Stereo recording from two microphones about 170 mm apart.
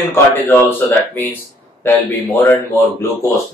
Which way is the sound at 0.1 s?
10° left (ahead or behind).